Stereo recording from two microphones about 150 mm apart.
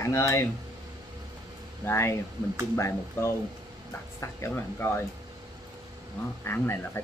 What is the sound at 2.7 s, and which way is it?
Cutlery, 20° left (ahead or behind).